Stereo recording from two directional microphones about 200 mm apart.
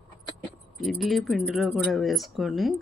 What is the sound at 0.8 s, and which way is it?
Speech, centre (ahead or behind).